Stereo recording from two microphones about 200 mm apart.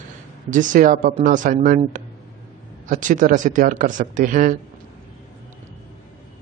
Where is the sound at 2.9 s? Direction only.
40° right (ahead or behind).